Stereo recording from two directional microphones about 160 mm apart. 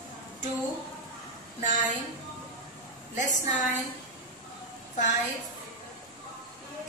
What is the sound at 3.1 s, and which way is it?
Speech, 50° left (ahead or behind).